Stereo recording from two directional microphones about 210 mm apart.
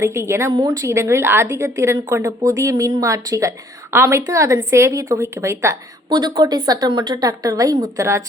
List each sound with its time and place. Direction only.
0.0 s speech: 10° right (ahead or behind)